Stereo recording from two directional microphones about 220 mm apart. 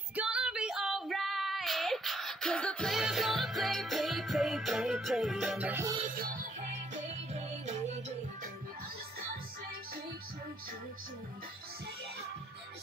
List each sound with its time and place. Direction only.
0.1 s child singing: 5° right (ahead or behind)
6.1 s music: 35° right (ahead or behind)